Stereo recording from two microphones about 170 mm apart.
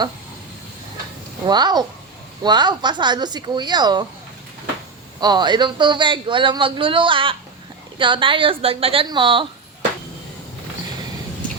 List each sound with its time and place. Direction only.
1.5 s a man's voice: 25° right (ahead or behind)
5.2 s a man's voice: 25° right (ahead or behind)